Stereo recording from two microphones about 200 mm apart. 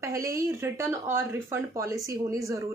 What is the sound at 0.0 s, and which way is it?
A woman's voice, 15° right (ahead or behind).